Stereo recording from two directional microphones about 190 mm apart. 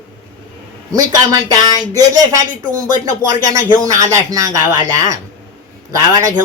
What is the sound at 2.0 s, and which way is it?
Speech, 20° right (ahead or behind).